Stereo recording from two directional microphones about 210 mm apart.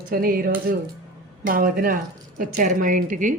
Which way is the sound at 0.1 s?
45° right (ahead or behind).